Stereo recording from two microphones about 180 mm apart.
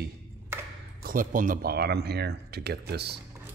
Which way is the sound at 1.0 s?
50° right (ahead or behind).